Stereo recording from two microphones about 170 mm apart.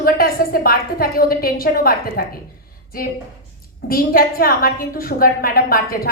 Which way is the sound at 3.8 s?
60° left (ahead or behind).